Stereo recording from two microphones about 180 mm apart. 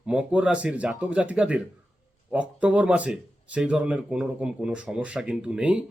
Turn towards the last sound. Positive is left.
turn(degrees=-5)  # may be behind; listen again after turning